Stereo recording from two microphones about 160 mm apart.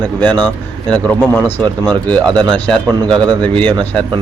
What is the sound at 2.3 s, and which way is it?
Speech, 25° right (ahead or behind).